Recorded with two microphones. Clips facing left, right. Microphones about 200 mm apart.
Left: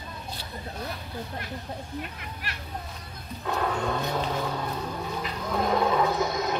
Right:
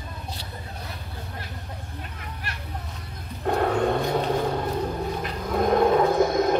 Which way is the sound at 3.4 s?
55° right (ahead or behind).